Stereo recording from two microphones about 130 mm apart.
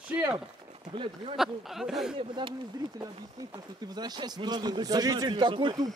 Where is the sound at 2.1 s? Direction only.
40° right (ahead or behind).